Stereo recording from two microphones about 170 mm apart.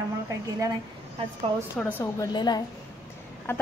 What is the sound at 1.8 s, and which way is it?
Speech, 10° left (ahead or behind).